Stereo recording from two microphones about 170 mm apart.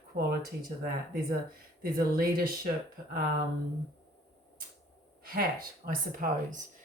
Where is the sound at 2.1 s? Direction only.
60° right (ahead or behind).